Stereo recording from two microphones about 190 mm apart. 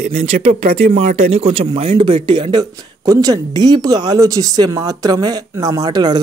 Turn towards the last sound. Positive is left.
turn(degrees=-20)  # may be behind; listen again after turning